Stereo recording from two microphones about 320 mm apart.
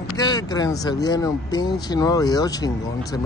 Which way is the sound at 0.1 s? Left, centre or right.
Centre.